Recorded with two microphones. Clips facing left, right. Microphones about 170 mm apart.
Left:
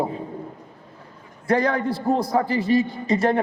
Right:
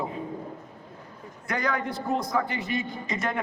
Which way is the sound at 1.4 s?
30° left (ahead or behind).